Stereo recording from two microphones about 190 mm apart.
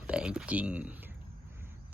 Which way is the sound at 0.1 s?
5° right (ahead or behind).